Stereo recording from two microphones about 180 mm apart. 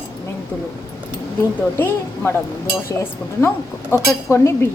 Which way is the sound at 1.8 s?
10° left (ahead or behind).